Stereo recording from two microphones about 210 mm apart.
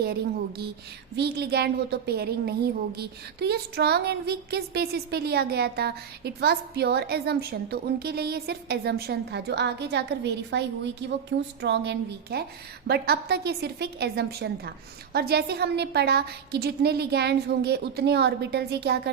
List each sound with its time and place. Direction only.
0.0 s a woman's voice: 50° right (ahead or behind)